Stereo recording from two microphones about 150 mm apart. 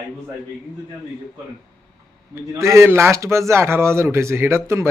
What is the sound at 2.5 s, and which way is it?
Speech, 20° right (ahead or behind).